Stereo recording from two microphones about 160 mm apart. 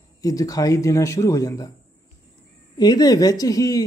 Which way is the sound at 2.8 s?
25° left (ahead or behind).